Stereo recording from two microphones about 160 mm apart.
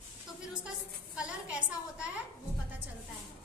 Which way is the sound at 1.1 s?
5° right (ahead or behind).